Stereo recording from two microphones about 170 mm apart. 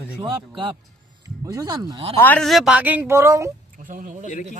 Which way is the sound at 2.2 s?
5° left (ahead or behind).